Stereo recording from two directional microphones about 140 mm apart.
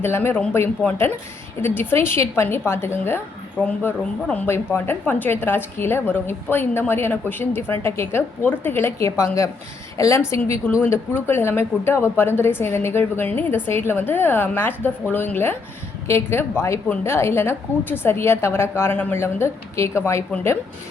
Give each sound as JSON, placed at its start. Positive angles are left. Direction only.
{"t": 0.0, "sound": "a woman's voice", "side_deg": 15}